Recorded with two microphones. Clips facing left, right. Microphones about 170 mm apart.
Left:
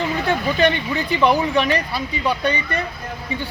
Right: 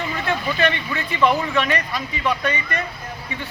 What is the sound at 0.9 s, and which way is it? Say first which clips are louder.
A man's voice: left 2 dB; 35° left (ahead or behind).